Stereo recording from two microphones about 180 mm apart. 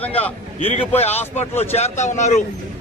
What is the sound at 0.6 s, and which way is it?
Speech, 35° left (ahead or behind).